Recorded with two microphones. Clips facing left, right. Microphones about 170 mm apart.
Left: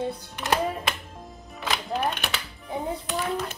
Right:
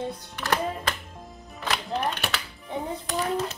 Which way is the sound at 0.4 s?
20° left (ahead or behind).